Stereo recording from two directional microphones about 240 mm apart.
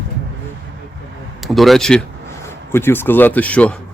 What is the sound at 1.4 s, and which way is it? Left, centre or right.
Speech, centre.